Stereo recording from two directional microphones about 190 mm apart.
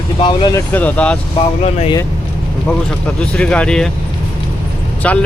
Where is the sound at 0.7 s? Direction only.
10° left (ahead or behind).